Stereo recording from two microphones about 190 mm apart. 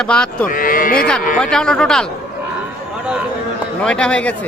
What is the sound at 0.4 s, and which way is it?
Speech, 45° left (ahead or behind).